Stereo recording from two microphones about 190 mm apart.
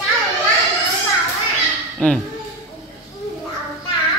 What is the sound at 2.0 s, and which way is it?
Speech, 5° left (ahead or behind).